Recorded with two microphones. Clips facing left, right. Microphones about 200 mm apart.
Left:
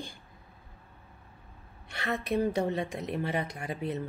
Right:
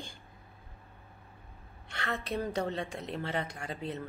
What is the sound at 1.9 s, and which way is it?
Speech, 15° left (ahead or behind).